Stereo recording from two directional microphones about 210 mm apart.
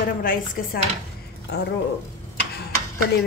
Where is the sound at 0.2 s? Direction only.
40° left (ahead or behind).